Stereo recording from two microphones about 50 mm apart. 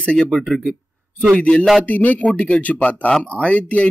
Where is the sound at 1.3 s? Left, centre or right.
Left.